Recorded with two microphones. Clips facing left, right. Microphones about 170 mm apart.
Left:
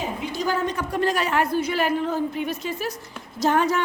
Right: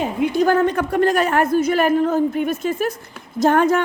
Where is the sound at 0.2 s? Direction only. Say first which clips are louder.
Right 11 dB; 60° right (ahead or behind).